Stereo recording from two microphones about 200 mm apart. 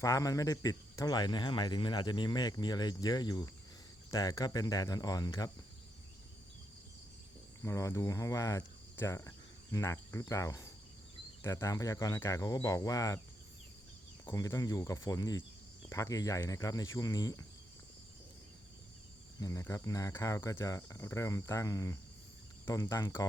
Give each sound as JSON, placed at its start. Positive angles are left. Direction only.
{"t": 0.0, "sound": "a man's voice", "side_deg": 15}
{"t": 7.6, "sound": "speech", "side_deg": 15}
{"t": 14.3, "sound": "speech", "side_deg": 15}
{"t": 19.4, "sound": "speech", "side_deg": 15}